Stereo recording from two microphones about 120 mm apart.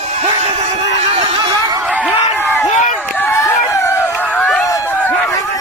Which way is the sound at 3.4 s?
25° left (ahead or behind).